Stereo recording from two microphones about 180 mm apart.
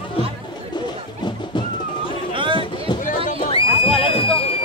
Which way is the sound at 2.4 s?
30° right (ahead or behind).